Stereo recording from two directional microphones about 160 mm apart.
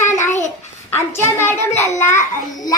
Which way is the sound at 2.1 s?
20° left (ahead or behind).